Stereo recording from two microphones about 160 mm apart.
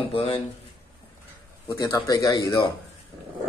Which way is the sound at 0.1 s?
35° left (ahead or behind).